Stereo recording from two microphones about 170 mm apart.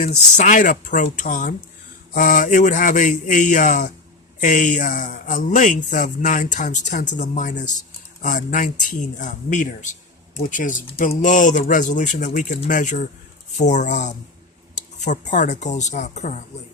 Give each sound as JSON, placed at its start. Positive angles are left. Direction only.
{"t": 0.0, "sound": "speech", "side_deg": 45}